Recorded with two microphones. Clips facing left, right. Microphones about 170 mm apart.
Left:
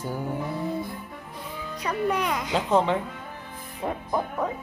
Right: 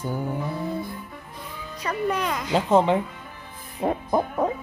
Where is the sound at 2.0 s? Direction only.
15° left (ahead or behind).